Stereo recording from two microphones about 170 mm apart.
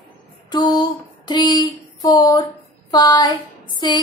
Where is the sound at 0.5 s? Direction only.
25° left (ahead or behind).